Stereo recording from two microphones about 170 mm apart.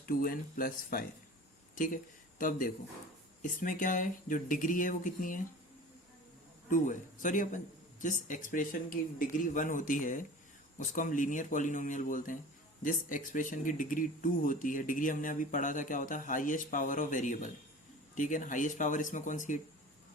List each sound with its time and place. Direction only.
0.0 s speech: 60° left (ahead or behind)
6.7 s speech: 50° left (ahead or behind)